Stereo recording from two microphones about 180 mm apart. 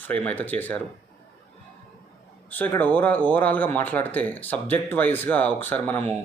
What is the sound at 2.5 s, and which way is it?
Speech, 10° left (ahead or behind).